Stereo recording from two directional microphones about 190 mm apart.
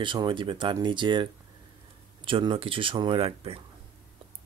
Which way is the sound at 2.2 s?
25° right (ahead or behind).